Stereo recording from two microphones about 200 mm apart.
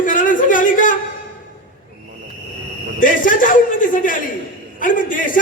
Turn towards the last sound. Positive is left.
turn(degrees=40)  # may be behind; listen again after turning